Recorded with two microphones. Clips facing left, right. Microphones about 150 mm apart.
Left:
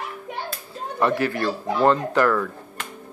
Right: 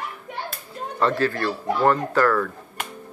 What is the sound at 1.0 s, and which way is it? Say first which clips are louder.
A man's voice: even; 15° left (ahead or behind).